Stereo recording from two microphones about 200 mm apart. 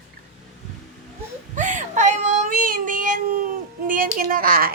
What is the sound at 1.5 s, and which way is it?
Child singing, 40° right (ahead or behind).